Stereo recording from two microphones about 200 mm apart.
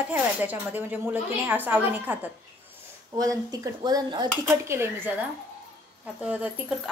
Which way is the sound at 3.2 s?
15° right (ahead or behind).